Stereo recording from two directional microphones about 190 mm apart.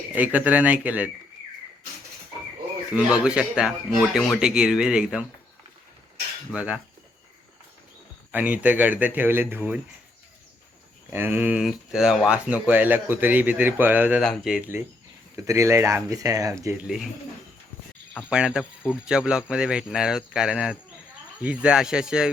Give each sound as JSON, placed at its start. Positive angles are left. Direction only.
{"t": 0.1, "sound": "speech", "side_deg": -10}
{"t": 2.9, "sound": "speech", "side_deg": -5}
{"t": 6.5, "sound": "speech", "side_deg": -5}
{"t": 8.3, "sound": "speech", "side_deg": -10}
{"t": 11.1, "sound": "speech", "side_deg": -10}
{"t": 16.8, "sound": "speech", "side_deg": 0}
{"t": 18.3, "sound": "speech", "side_deg": -5}